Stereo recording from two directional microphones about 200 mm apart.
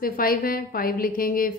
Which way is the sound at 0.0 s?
45° left (ahead or behind).